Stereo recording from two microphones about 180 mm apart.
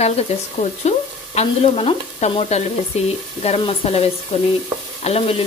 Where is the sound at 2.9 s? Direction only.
35° left (ahead or behind).